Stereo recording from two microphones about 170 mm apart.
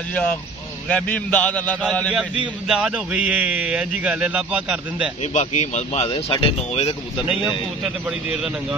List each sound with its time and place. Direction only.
0.8 s a man's voice: 10° left (ahead or behind)
2.7 s speech: 5° right (ahead or behind)
5.2 s speech: 40° left (ahead or behind)
7.2 s speech: 5° right (ahead or behind)